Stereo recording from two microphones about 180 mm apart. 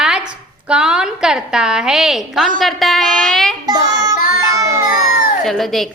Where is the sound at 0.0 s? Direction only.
5° right (ahead or behind).